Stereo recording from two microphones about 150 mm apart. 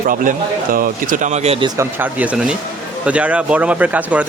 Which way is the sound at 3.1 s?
10° right (ahead or behind).